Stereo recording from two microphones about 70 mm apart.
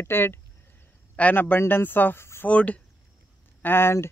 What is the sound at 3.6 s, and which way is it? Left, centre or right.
Speech, left.